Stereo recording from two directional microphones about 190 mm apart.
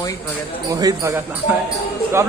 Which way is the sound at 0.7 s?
15° right (ahead or behind).